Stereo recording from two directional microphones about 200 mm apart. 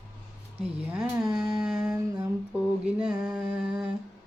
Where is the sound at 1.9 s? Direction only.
15° right (ahead or behind).